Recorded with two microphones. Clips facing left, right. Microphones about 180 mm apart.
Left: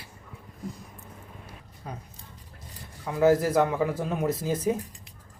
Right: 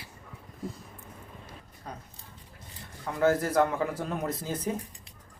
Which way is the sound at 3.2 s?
5° left (ahead or behind).